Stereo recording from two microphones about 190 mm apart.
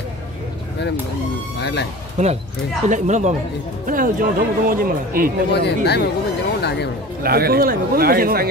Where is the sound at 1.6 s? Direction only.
60° left (ahead or behind).